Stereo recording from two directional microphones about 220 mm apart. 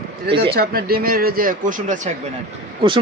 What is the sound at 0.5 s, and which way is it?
Speech, 45° right (ahead or behind).